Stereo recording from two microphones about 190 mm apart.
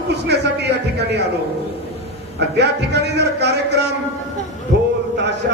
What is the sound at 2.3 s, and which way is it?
A man's voice, 60° right (ahead or behind).